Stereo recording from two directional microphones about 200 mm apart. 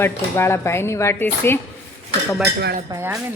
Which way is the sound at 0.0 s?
10° left (ahead or behind).